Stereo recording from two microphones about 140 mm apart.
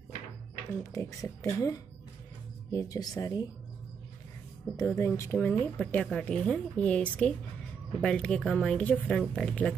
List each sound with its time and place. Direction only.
0.9 s speech: 20° left (ahead or behind)
4.7 s speech: 20° left (ahead or behind)